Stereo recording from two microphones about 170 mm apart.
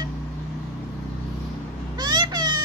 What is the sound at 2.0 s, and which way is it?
Vehicle, 25° right (ahead or behind).